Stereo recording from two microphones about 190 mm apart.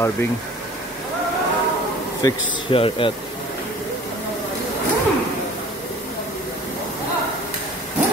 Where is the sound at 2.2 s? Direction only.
25° left (ahead or behind).